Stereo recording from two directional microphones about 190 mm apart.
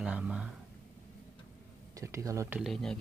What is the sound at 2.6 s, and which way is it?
Speech, centre (ahead or behind).